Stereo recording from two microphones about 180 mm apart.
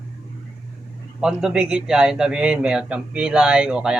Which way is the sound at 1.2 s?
5° right (ahead or behind).